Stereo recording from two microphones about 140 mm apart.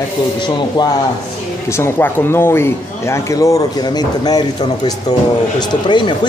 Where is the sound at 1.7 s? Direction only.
15° left (ahead or behind); by 6.1 s 35° left (ahead or behind).